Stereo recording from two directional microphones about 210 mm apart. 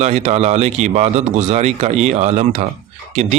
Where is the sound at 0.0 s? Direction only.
30° right (ahead or behind).